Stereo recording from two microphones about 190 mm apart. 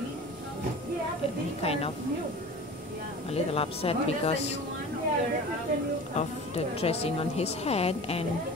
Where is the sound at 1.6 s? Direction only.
30° left (ahead or behind).